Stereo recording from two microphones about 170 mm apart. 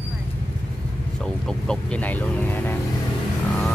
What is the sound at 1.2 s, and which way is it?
Speech, 5° left (ahead or behind).